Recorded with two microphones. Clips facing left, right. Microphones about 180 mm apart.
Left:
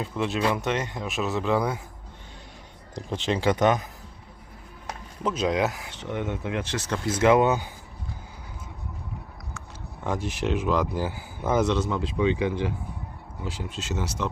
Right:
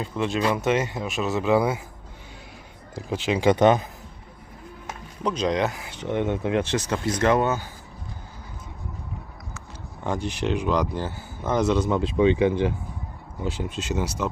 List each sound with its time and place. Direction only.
0.0 s speech: centre (ahead or behind)
2.9 s speech: 5° right (ahead or behind)
3.5 s speech: 30° right (ahead or behind)
5.2 s speech: 5° left (ahead or behind)
6.0 s speech: 25° right (ahead or behind)
6.7 s speech: 15° right (ahead or behind)
7.0 s speech: 5° left (ahead or behind)
9.6 s speech: centre (ahead or behind)
11.6 s speech: 10° right (ahead or behind)
11.9 s speech: 25° right (ahead or behind)